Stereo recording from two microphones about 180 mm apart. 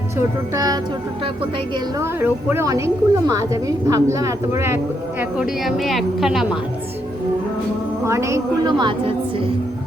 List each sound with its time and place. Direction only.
0.5 s a woman's voice: 20° right (ahead or behind)
2.0 s a woman's voice: 10° right (ahead or behind)
5.4 s a woman's voice: centre (ahead or behind)
8.0 s a woman's voice: 15° right (ahead or behind)